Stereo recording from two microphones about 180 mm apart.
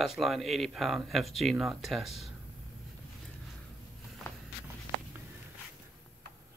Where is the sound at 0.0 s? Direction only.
Centre (ahead or behind).